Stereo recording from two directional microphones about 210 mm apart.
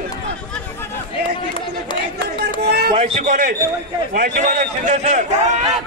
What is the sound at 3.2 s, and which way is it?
A man's voice, 40° right (ahead or behind).